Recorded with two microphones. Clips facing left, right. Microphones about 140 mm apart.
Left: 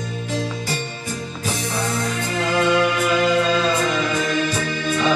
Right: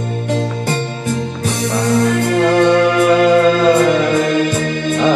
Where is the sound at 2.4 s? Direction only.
60° right (ahead or behind).